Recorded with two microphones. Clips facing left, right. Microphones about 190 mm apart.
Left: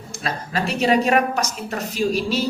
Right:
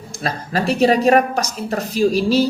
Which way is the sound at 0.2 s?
40° right (ahead or behind).